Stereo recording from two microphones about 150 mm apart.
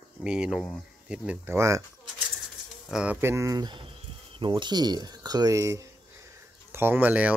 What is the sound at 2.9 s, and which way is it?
Speech, 10° right (ahead or behind).